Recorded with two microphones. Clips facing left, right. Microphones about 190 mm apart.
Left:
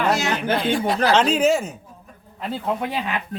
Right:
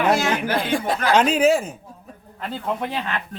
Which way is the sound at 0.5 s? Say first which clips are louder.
Left 1 dB; 50° right (ahead or behind).